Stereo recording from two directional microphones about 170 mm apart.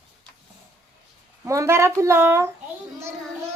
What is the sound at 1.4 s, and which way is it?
Speech, 15° right (ahead or behind).